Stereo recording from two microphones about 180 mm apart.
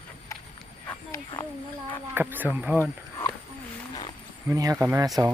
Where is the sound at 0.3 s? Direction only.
15° left (ahead or behind).